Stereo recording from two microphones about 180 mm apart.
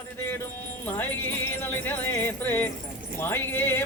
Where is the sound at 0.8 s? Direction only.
10° left (ahead or behind).